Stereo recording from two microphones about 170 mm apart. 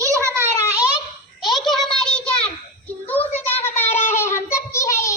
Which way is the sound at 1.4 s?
Centre (ahead or behind).